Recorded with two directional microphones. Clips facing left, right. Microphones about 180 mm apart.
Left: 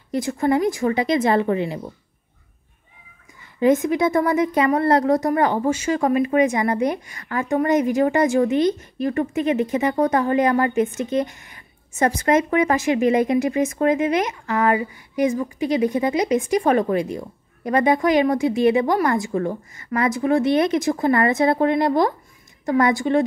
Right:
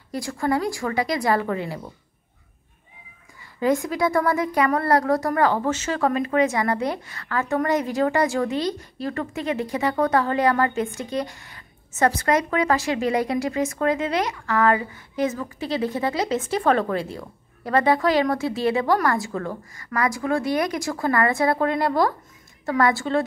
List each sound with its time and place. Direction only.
0.1 s a woman's voice: 20° left (ahead or behind)
3.5 s a woman's voice: 20° left (ahead or behind)